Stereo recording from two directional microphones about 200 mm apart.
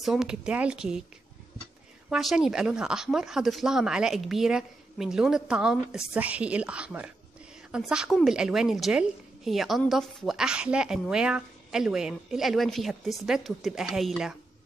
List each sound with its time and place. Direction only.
0.0 s a woman's voice: centre (ahead or behind)
2.0 s a woman's voice: 5° right (ahead or behind)